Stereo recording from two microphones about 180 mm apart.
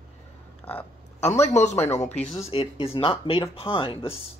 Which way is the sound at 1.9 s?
40° left (ahead or behind).